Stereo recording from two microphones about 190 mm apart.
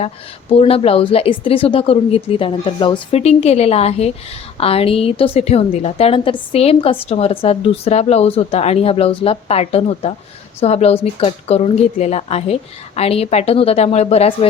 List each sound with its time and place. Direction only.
0.5 s a woman's voice: 30° left (ahead or behind)